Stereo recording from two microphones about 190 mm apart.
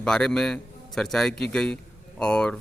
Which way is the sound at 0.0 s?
5° left (ahead or behind).